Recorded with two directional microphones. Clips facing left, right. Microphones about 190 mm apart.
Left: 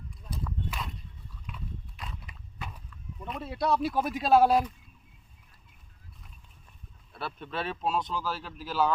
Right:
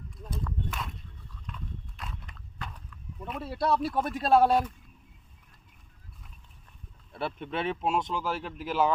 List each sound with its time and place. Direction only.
0.3 s horse: 5° left (ahead or behind)
3.2 s speech: 5° right (ahead or behind)
7.2 s speech: 20° right (ahead or behind)